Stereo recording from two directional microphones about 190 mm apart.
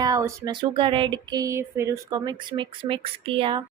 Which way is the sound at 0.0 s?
15° right (ahead or behind).